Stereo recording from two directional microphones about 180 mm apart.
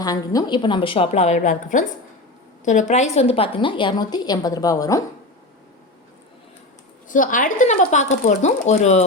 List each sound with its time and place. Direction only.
0.0 s a woman's voice: 20° left (ahead or behind)
7.1 s speech: 45° left (ahead or behind)